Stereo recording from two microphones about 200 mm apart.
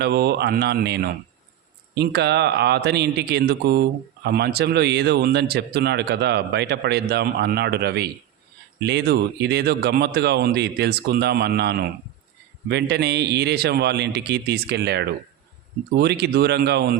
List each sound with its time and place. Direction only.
0.0 s a man's voice: 55° right (ahead or behind)